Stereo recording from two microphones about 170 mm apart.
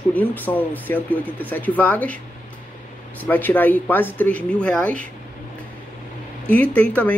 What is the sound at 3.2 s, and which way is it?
Speech, 10° left (ahead or behind).